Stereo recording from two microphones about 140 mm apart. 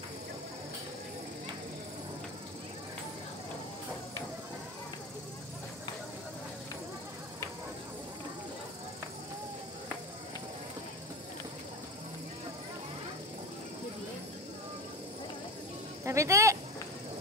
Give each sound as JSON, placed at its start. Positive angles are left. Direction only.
{"t": 16.0, "sound": "speech", "side_deg": -20}